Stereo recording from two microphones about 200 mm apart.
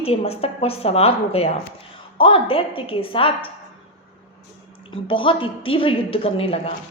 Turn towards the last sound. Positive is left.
turn(degrees=30)  # may be behind; listen again after turning